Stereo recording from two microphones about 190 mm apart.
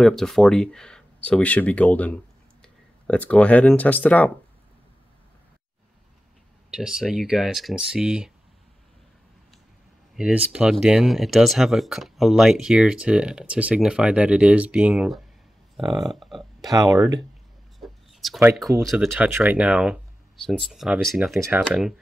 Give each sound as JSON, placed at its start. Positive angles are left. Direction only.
{"t": 0.0, "sound": "speech", "side_deg": 0}
{"t": 6.7, "sound": "speech", "side_deg": -5}
{"t": 10.1, "sound": "speech", "side_deg": -5}
{"t": 16.6, "sound": "speech", "side_deg": -20}
{"t": 17.7, "sound": "a sound", "side_deg": 0}
{"t": 18.9, "sound": "speech", "side_deg": -5}
{"t": 21.4, "sound": "speech", "side_deg": -10}